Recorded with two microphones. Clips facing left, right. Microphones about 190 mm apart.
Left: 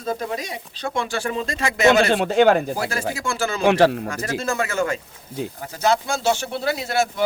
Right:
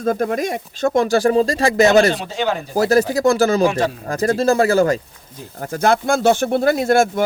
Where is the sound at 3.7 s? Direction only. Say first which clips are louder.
Left 4 dB; 65° left (ahead or behind).